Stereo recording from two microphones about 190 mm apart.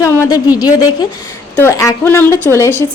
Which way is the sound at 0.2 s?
20° left (ahead or behind).